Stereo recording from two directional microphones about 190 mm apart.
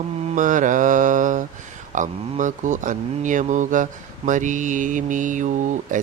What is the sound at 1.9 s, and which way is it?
Speech, 40° right (ahead or behind).